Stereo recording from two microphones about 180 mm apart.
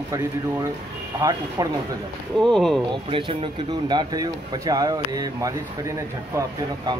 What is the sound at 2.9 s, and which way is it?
Speech, 30° right (ahead or behind).